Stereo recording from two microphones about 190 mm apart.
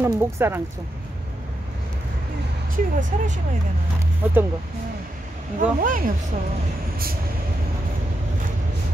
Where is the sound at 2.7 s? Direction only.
40° right (ahead or behind).